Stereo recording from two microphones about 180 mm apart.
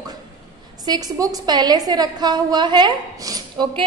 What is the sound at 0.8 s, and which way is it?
A woman's voice, 20° right (ahead or behind).